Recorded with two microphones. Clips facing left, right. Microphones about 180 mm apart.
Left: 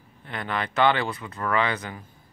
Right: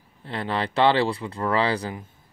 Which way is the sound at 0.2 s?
30° right (ahead or behind).